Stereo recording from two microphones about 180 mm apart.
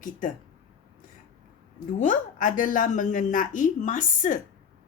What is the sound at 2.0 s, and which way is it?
A woman's voice, 45° left (ahead or behind).